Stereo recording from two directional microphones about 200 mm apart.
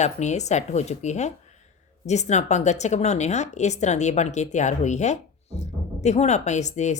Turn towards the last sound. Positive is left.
turn(degrees=35)  # may be behind; listen again after turning